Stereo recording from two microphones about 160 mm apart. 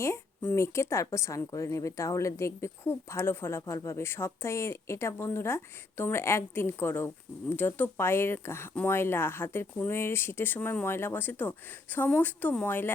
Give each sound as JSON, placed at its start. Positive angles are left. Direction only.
{"t": 0.0, "sound": "a woman's voice", "side_deg": 15}